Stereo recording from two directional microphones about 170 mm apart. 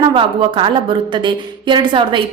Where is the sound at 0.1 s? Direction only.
30° right (ahead or behind).